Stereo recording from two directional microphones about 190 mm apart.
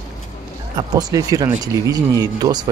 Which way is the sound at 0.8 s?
20° right (ahead or behind).